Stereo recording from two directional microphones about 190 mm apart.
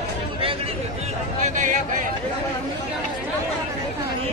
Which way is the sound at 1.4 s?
40° right (ahead or behind).